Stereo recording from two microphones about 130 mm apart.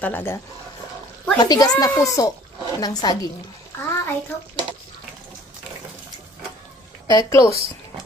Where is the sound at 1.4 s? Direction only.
30° left (ahead or behind).